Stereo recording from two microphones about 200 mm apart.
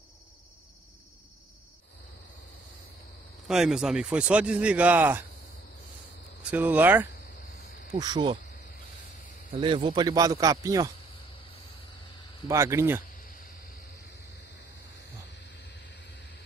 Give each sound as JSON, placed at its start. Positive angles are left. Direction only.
{"t": 3.4, "sound": "speech", "side_deg": 0}
{"t": 6.5, "sound": "speech", "side_deg": -10}
{"t": 8.0, "sound": "cricket", "side_deg": -20}
{"t": 9.6, "sound": "speech", "side_deg": -25}
{"t": 12.4, "sound": "speech", "side_deg": -15}
{"t": 15.4, "sound": "vehicle", "side_deg": 60}